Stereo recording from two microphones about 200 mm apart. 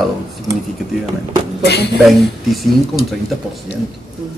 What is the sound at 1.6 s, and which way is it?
Speech, 55° left (ahead or behind).